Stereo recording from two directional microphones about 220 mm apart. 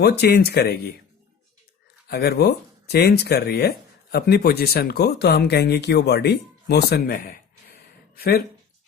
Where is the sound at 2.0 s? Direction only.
45° left (ahead or behind).